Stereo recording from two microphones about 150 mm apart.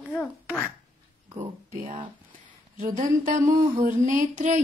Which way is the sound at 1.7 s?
65° right (ahead or behind).